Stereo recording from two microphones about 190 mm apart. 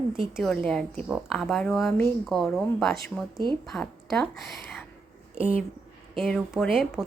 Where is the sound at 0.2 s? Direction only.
Centre (ahead or behind).